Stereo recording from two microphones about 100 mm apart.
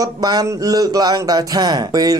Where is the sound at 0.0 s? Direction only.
40° right (ahead or behind).